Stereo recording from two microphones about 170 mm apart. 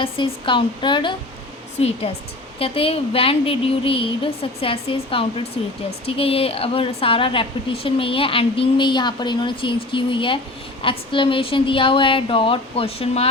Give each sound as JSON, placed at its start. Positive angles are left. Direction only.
{"t": 0.0, "sound": "a woman's voice", "side_deg": 30}
{"t": 2.6, "sound": "a woman's voice", "side_deg": 35}